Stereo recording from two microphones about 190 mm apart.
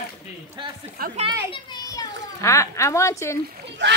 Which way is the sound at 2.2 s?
15° left (ahead or behind).